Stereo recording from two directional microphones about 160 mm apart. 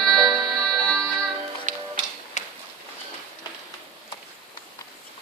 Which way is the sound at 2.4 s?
45° left (ahead or behind).